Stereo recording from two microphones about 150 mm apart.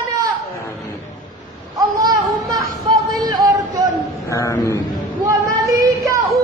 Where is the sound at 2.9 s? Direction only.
25° right (ahead or behind).